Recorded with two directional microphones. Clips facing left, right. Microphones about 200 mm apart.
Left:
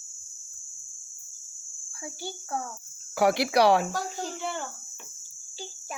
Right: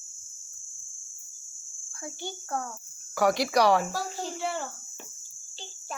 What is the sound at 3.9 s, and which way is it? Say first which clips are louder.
Speech: even; 5° right (ahead or behind).